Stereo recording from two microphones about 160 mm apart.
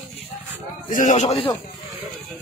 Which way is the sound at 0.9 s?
55° left (ahead or behind).